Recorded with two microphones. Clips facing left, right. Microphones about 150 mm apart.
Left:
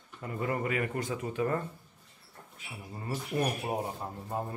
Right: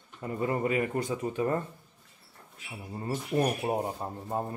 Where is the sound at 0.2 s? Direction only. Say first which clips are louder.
Right 3 dB; 25° right (ahead or behind).